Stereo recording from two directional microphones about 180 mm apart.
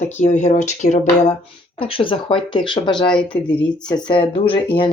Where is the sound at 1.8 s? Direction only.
30° left (ahead or behind).